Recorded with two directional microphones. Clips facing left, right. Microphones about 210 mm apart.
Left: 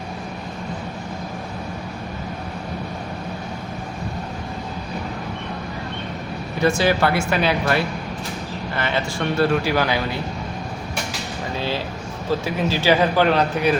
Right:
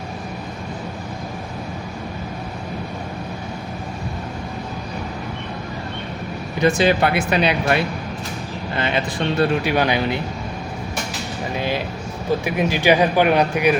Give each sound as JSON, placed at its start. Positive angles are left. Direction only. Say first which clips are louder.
{"t": 6.6, "sound": "speech", "louder": "right 2 dB", "side_deg": -15}
{"t": 12.5, "sound": "speech", "louder": "right 2 dB", "side_deg": -15}